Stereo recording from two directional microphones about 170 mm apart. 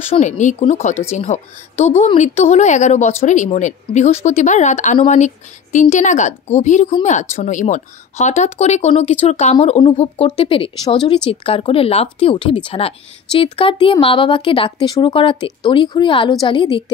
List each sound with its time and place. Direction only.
0.2 s a woman's voice: 45° left (ahead or behind); by 16.8 s 30° left (ahead or behind)